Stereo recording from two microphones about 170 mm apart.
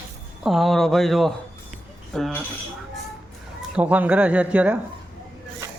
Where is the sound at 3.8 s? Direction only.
10° right (ahead or behind).